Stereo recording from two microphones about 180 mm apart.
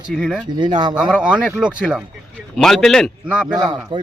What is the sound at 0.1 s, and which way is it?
Speech, 5° left (ahead or behind).